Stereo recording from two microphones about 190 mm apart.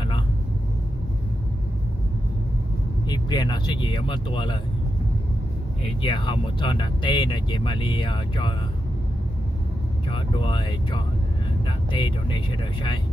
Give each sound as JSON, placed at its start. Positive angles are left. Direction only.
{"t": 3.1, "sound": "speech", "side_deg": 20}
{"t": 6.0, "sound": "speech", "side_deg": 25}
{"t": 10.1, "sound": "speech", "side_deg": 25}